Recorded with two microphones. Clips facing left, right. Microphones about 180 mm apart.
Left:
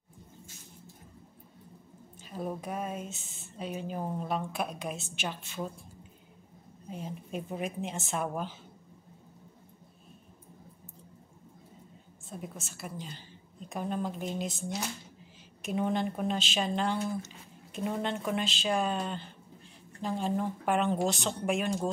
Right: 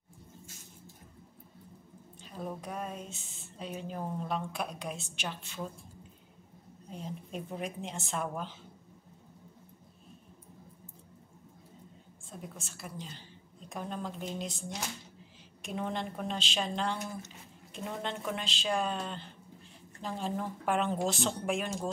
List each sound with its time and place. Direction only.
2.2 s speech: 5° left (ahead or behind)
6.9 s speech: 5° left (ahead or behind)
12.3 s speech: 5° left (ahead or behind)
15.6 s speech: 5° left (ahead or behind)